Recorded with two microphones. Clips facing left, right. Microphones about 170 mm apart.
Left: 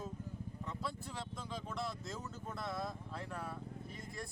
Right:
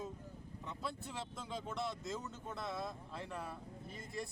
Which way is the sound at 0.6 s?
Centre (ahead or behind).